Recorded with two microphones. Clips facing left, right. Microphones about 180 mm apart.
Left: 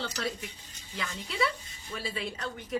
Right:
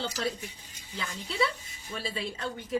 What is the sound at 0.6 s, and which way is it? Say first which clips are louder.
Speech: right 1 dB; 10° right (ahead or behind).